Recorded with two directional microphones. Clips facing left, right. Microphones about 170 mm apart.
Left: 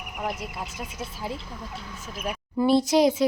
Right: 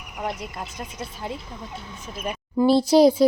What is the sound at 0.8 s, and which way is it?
Speech, 5° left (ahead or behind).